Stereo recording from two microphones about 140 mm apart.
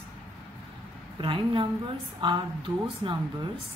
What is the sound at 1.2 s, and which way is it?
A woman's voice, 35° right (ahead or behind).